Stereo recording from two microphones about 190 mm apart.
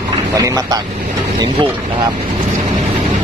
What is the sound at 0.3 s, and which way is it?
Speech, 20° right (ahead or behind).